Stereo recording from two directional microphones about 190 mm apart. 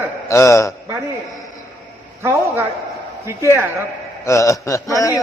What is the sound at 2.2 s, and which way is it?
A man's voice, 15° right (ahead or behind).